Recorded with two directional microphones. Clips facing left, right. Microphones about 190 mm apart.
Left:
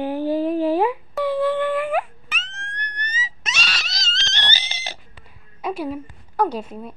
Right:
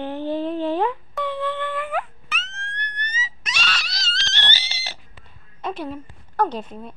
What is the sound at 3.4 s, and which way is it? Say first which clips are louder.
Wail: left 3 dB; 25° left (ahead or behind).